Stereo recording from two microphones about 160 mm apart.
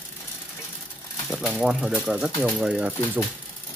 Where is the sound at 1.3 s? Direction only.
Centre (ahead or behind).